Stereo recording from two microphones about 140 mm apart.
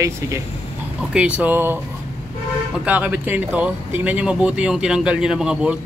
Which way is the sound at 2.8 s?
10° right (ahead or behind).